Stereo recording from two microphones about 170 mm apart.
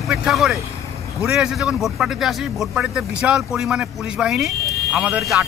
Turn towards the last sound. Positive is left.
turn(degrees=-5)  # may be behind; listen again after turning